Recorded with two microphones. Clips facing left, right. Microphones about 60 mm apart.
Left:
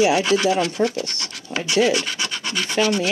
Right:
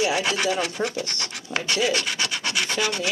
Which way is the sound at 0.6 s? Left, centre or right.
Right.